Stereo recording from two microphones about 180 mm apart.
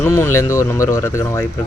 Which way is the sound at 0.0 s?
15° left (ahead or behind).